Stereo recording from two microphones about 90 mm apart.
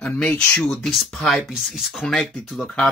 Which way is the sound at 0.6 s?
Centre (ahead or behind).